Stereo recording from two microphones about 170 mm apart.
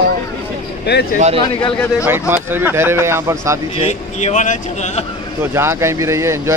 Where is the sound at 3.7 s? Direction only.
40° left (ahead or behind).